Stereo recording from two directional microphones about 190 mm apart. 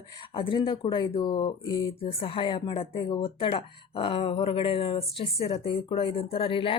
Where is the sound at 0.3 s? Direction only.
25° left (ahead or behind).